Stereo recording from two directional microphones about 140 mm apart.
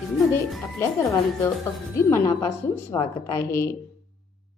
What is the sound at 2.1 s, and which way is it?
A woman's voice, 20° left (ahead or behind).